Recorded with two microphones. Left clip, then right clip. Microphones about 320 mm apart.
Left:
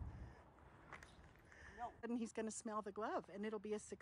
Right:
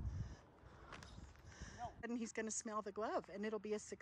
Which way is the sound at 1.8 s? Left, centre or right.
Centre.